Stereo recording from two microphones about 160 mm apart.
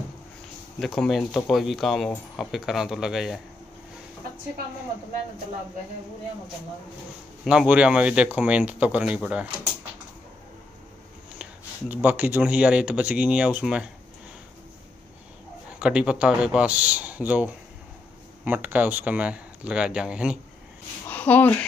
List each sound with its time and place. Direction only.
0.7 s speech: centre (ahead or behind)
7.4 s speech: 5° right (ahead or behind)
11.9 s speech: 10° right (ahead or behind)
15.8 s speech: 5° right (ahead or behind)
21.1 s speech: 10° left (ahead or behind)